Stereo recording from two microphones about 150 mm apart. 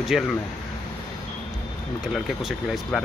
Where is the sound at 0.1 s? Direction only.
Centre (ahead or behind).